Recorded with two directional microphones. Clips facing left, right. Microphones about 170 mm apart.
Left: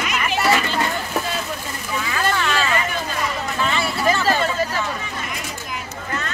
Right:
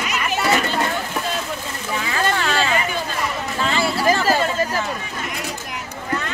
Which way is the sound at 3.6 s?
35° right (ahead or behind).